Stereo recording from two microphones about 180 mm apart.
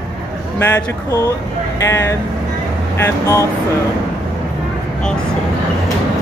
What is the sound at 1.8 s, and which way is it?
Speech, 15° left (ahead or behind).